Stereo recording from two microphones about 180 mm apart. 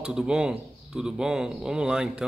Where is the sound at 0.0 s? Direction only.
5° right (ahead or behind).